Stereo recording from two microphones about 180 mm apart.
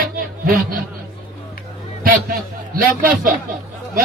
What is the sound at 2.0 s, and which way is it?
A man's voice, 55° right (ahead or behind).